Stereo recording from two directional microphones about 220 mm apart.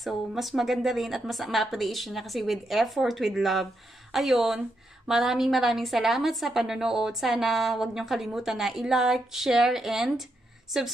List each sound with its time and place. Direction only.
0.0 s a woman's voice: centre (ahead or behind)